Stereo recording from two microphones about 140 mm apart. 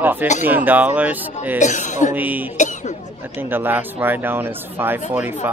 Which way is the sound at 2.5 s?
60° left (ahead or behind).